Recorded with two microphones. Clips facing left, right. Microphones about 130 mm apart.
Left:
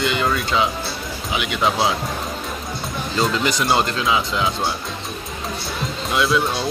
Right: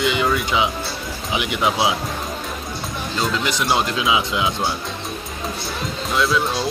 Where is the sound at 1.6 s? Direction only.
10° right (ahead or behind).